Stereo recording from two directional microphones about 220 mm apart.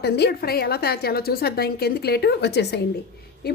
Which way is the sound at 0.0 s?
50° left (ahead or behind).